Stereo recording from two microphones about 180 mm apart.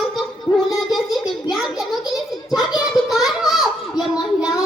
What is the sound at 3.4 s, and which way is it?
Children playing, centre (ahead or behind).